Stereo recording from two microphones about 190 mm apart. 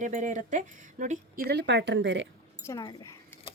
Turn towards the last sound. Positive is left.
turn(degrees=20)  # may be behind; listen again after turning